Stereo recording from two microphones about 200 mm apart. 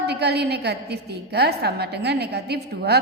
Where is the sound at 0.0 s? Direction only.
55° right (ahead or behind).